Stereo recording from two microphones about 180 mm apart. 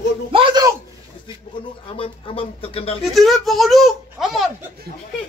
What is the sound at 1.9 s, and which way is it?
Speech, 30° left (ahead or behind).